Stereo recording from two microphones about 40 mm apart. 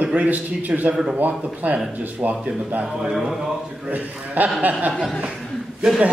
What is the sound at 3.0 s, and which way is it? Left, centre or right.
Speech, centre.